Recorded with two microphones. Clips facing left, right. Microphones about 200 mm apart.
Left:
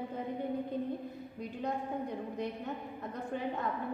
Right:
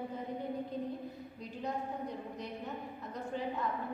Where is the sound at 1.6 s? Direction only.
55° left (ahead or behind).